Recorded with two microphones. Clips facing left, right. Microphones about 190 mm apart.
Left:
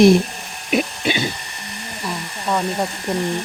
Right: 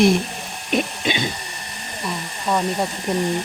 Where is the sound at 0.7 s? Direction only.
5° left (ahead or behind).